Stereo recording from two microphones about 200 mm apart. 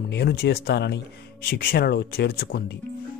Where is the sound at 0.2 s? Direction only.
55° left (ahead or behind).